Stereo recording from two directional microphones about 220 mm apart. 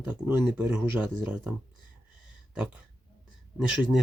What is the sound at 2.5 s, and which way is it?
Speech, 5° right (ahead or behind).